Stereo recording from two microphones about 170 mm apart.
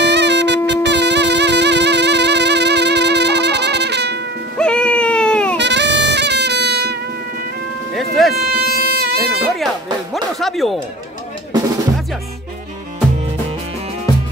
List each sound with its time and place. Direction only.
0.0 s wind instrument: 90° right
0.7 s music: 90° right
4.6 s baby cry: 5° left (ahead or behind)
5.6 s music: 90° right
7.9 s music: centre (ahead or behind)
8.5 s a sound: 70° right (ahead or behind)
10.1 s a sound: centre (ahead or behind)